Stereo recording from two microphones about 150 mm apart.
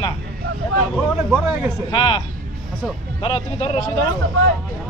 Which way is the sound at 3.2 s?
35° left (ahead or behind).